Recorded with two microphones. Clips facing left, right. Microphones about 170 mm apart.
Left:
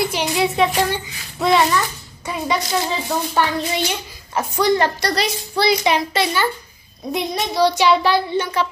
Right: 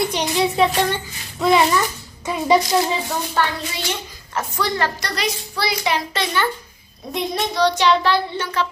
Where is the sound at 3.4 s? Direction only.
15° left (ahead or behind).